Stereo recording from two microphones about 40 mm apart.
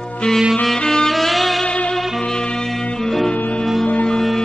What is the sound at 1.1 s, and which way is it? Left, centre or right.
Music, centre.